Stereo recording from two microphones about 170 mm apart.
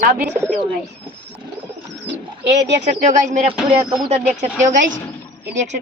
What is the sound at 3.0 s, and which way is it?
Speech, 45° right (ahead or behind).